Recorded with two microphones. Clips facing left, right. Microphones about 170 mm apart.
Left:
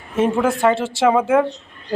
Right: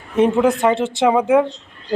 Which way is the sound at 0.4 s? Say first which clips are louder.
Right 1 dB; 20° right (ahead or behind).